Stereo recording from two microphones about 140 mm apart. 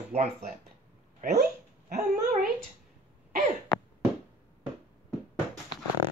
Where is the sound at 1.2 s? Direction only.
90° right; by 2.5 s 65° right (ahead or behind).